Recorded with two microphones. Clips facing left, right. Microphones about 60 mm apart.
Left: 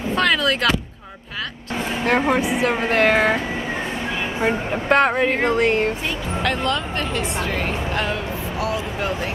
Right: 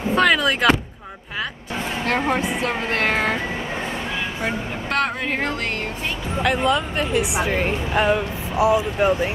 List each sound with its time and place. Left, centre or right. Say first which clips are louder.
0.1 s speech: right 1 dB; centre
2.0 s speech: left 3 dB; centre
4.4 s a woman's voice: left 4 dB; left
6.4 s speech: right 3 dB; centre